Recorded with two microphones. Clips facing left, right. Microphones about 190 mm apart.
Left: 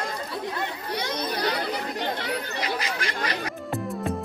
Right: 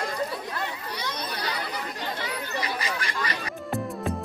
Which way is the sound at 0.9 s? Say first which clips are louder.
Left 8 dB; 60° left (ahead or behind).